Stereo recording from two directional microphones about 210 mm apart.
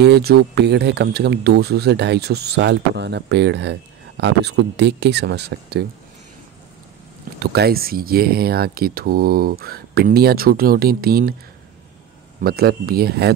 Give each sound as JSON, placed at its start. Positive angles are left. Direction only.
{"t": 0.0, "sound": "speech", "side_deg": -50}
{"t": 7.3, "sound": "speech", "side_deg": -50}
{"t": 12.4, "sound": "speech", "side_deg": -45}